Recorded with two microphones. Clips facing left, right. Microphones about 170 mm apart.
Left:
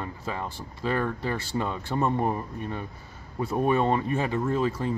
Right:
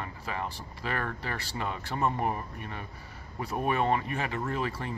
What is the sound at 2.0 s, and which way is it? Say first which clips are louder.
Speech: left 4 dB; 30° left (ahead or behind).